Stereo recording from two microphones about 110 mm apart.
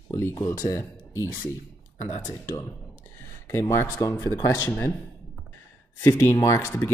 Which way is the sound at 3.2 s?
25° left (ahead or behind).